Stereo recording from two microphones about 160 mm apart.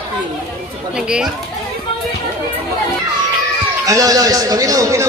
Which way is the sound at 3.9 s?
20° right (ahead or behind).